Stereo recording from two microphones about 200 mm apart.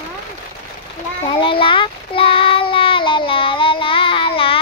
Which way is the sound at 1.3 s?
25° left (ahead or behind).